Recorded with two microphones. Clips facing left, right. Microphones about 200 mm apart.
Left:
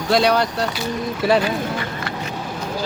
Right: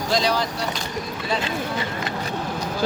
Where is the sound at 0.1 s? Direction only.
60° left (ahead or behind).